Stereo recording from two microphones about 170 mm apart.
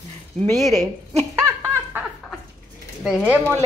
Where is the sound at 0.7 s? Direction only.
15° right (ahead or behind).